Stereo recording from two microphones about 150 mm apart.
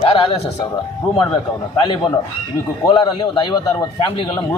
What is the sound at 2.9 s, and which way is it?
A man's voice, 30° left (ahead or behind).